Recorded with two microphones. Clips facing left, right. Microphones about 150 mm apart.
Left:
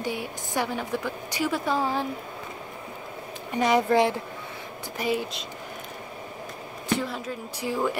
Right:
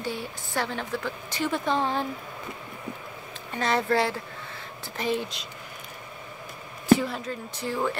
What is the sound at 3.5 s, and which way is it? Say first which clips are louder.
Speech: left 4 dB; 15° left (ahead or behind).